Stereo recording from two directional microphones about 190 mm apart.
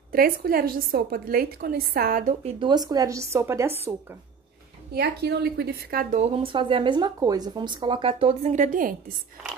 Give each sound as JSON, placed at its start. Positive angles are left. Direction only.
{"t": 0.1, "sound": "a woman's voice", "side_deg": -50}
{"t": 2.4, "sound": "speech", "side_deg": -25}
{"t": 4.9, "sound": "a woman's voice", "side_deg": -55}
{"t": 6.1, "sound": "speech", "side_deg": -30}